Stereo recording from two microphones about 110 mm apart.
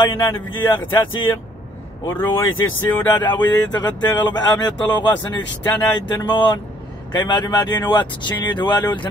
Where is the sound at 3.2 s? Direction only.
40° left (ahead or behind).